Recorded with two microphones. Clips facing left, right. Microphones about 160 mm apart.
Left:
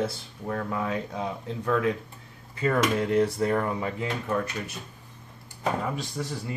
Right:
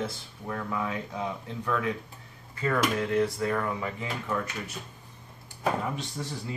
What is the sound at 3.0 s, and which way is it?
Speech, 30° left (ahead or behind).